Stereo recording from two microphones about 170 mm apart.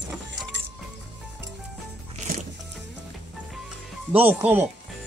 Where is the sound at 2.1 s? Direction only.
45° right (ahead or behind).